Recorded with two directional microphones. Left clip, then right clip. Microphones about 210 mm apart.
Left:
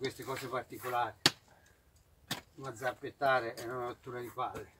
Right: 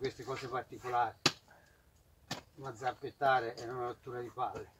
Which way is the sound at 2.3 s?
40° left (ahead or behind).